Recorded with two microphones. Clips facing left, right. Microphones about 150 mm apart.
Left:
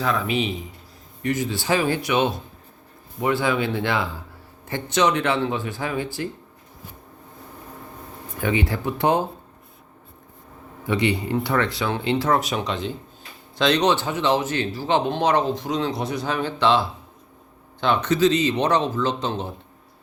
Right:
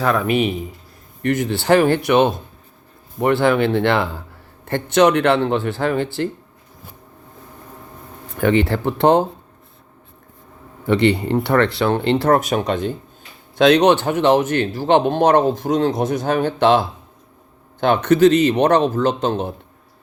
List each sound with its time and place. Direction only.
0.0 s speech: 60° right (ahead or behind)
8.4 s speech: 65° right (ahead or behind)
10.8 s speech: 65° right (ahead or behind)